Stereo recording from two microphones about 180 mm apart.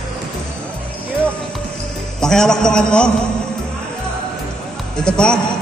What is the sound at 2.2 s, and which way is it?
Speech, 5° left (ahead or behind).